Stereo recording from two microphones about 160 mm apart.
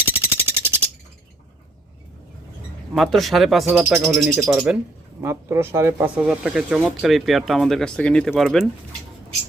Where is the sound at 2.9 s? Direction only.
Centre (ahead or behind).